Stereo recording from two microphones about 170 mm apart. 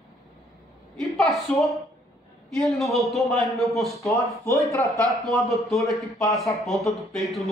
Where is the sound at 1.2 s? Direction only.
Centre (ahead or behind).